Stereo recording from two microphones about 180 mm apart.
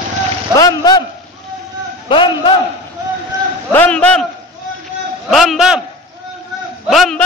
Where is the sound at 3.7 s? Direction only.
10° left (ahead or behind).